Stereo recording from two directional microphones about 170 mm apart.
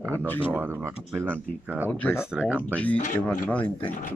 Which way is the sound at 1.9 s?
10° left (ahead or behind).